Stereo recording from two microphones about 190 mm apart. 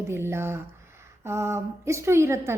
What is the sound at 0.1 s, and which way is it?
A woman's voice, 15° right (ahead or behind).